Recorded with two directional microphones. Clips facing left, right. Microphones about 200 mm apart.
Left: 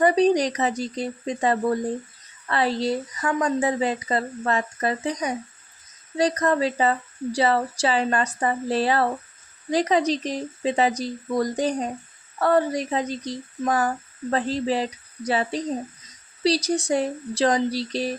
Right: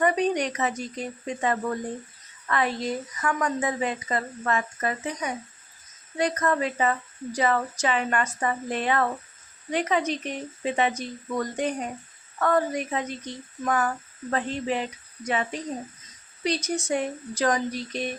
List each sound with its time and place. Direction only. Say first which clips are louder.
0.0 s speech: left 5 dB; 35° left (ahead or behind)